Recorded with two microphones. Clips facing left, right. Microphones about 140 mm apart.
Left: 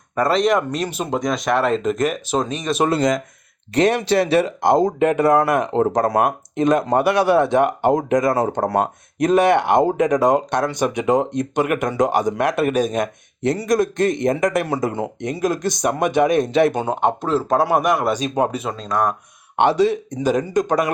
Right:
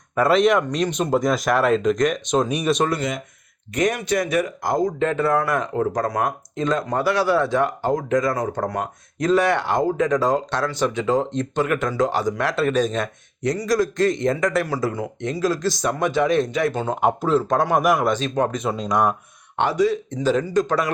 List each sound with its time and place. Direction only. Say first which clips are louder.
0.2 s speech: even; centre (ahead or behind)
3.8 s a man's voice: left 5 dB; 30° left (ahead or behind); by 13.1 s 10° left (ahead or behind)
13.4 s a man's voice: left 2 dB; 25° left (ahead or behind)
17.0 s speech: right 2 dB; 5° right (ahead or behind)
18.1 s speech: left 2 dB; 10° left (ahead or behind)
18.7 s speech: right 1 dB; 10° right (ahead or behind)
19.5 s a man's voice: left 3 dB; 25° left (ahead or behind)
20.1 s speech: left 1 dB; 15° left (ahead or behind)